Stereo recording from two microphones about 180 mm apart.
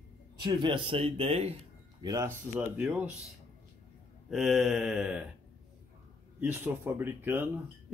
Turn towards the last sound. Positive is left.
turn(degrees=-10)  # may be behind; listen again after turning